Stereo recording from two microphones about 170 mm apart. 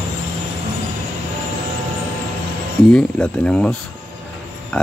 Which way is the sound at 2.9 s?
5° left (ahead or behind).